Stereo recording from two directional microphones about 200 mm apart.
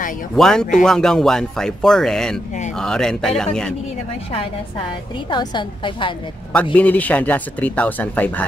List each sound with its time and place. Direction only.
0.4 s speech: 5° left (ahead or behind)
5.3 s a woman's voice: 20° left (ahead or behind)
6.5 s speech: 5° left (ahead or behind)